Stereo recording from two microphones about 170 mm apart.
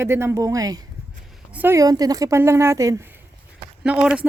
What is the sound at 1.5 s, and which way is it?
Speech, 10° right (ahead or behind).